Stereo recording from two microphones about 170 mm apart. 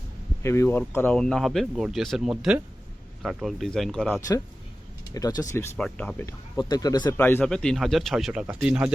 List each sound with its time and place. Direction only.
0.4 s speech: 15° left (ahead or behind)
5.1 s speech: 20° left (ahead or behind)
6.6 s speech: 25° left (ahead or behind)
7.2 s speech: 10° left (ahead or behind); by 8.9 s 5° right (ahead or behind)